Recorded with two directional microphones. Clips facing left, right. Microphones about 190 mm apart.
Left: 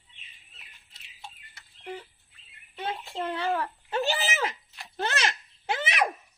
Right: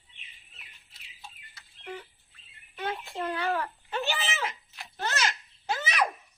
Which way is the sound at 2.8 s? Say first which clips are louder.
Left 1 dB; 25° left (ahead or behind).